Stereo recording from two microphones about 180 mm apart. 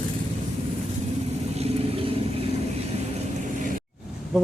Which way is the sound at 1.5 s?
35° right (ahead or behind).